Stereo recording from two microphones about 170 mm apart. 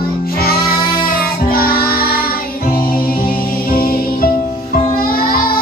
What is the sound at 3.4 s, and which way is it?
Music, 60° left (ahead or behind).